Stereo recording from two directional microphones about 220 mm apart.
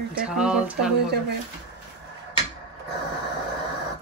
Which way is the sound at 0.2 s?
5° right (ahead or behind).